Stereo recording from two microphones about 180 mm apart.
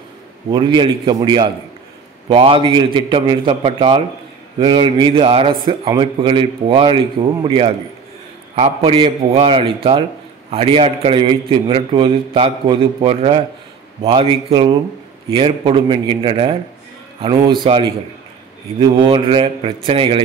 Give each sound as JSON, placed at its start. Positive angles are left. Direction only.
{"t": 0.5, "sound": "a man's voice", "side_deg": -25}
{"t": 18.8, "sound": "a man's voice", "side_deg": -30}